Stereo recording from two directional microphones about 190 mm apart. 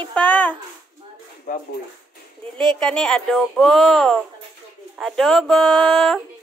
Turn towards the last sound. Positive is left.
turn(degrees=5)  # may be behind; listen again after turning